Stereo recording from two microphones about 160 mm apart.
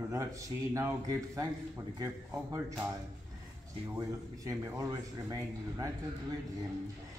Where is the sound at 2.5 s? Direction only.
20° right (ahead or behind).